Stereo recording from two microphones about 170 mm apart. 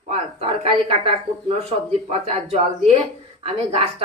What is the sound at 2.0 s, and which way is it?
Speech, 40° right (ahead or behind).